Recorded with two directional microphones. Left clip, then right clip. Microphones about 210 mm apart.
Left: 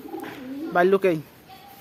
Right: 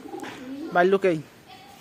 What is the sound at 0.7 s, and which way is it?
Speech, centre (ahead or behind).